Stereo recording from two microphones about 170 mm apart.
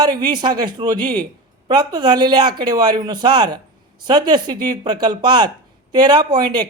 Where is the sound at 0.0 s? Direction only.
25° right (ahead or behind).